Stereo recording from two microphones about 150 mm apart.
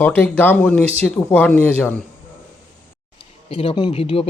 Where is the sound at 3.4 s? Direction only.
40° left (ahead or behind).